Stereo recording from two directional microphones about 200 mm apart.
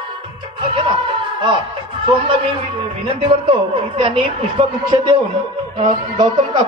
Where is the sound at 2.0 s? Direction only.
25° right (ahead or behind).